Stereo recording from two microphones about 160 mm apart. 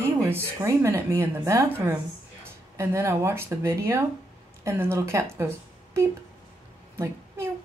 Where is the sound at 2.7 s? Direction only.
15° right (ahead or behind).